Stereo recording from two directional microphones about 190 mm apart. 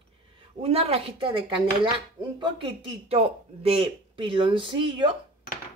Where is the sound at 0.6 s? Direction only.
30° right (ahead or behind).